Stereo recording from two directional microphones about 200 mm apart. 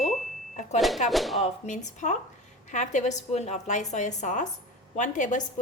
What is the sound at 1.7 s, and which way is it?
A woman's voice, 35° left (ahead or behind).